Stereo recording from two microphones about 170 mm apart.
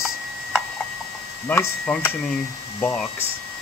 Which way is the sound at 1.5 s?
15° left (ahead or behind).